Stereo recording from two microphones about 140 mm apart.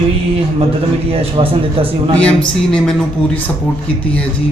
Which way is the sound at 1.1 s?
40° right (ahead or behind).